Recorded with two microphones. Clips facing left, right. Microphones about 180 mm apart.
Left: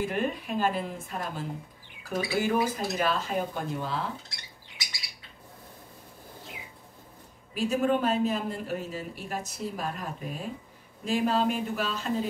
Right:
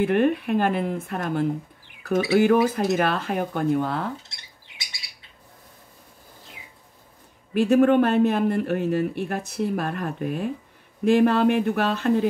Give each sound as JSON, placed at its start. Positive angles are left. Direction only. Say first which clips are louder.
{"t": 0.0, "sound": "speech", "louder": "right 9 dB", "side_deg": -60}
{"t": 4.3, "sound": "squawk", "louder": "left 2 dB", "side_deg": -25}
{"t": 7.5, "sound": "speech", "louder": "right 9 dB", "side_deg": -60}